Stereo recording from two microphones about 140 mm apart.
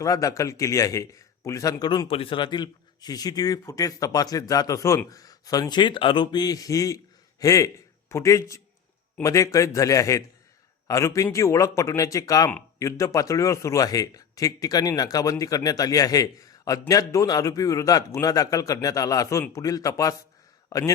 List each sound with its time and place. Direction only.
0.0 s a man's voice: 25° left (ahead or behind)